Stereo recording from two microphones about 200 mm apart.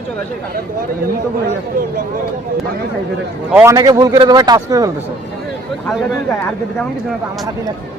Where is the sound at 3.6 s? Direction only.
15° right (ahead or behind).